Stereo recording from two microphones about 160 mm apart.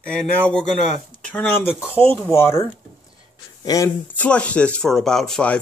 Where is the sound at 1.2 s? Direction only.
10° left (ahead or behind).